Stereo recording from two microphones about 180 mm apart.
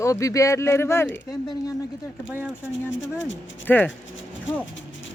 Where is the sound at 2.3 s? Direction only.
10° right (ahead or behind).